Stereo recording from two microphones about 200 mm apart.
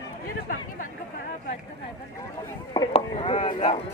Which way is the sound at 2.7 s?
25° left (ahead or behind).